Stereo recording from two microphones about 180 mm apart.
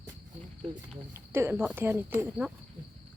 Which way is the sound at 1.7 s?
15° right (ahead or behind).